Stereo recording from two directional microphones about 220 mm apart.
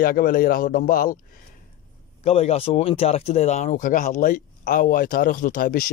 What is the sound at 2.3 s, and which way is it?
Speech, 30° left (ahead or behind).